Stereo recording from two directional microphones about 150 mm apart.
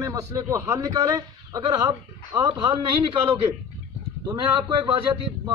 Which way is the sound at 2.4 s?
35° right (ahead or behind).